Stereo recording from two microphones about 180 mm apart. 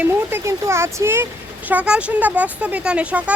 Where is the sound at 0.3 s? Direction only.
15° right (ahead or behind).